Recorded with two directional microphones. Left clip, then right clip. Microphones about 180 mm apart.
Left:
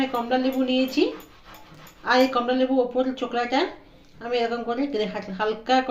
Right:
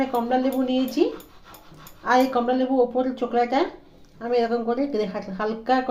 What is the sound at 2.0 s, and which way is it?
Speech, 65° right (ahead or behind).